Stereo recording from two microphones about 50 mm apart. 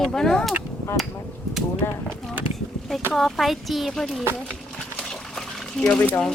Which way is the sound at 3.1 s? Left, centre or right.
Centre.